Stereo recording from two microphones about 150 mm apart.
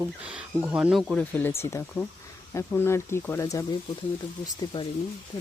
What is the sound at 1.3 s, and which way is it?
Speech, 15° left (ahead or behind).